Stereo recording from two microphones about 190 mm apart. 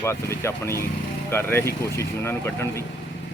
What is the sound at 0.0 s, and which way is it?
Speech, 15° left (ahead or behind).